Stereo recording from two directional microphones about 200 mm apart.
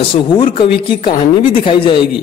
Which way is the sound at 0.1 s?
25° left (ahead or behind).